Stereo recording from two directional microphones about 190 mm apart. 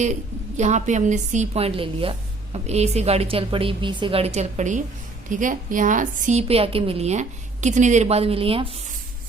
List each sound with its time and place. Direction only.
0.0 s a woman's voice: 40° right (ahead or behind)